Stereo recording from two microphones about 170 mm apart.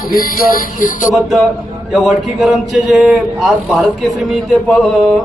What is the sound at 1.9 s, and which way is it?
A man's voice, centre (ahead or behind).